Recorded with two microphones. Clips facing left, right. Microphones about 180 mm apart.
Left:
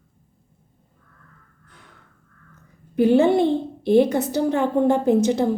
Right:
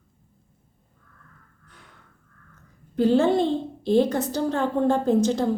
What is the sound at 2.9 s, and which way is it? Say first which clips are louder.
A woman's voice: left 3 dB; 15° left (ahead or behind).